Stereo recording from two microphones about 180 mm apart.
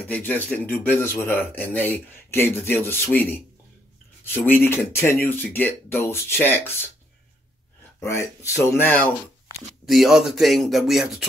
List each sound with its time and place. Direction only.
0.0 s speech: 10° left (ahead or behind)
8.0 s speech: 15° left (ahead or behind)
9.8 s speech: centre (ahead or behind)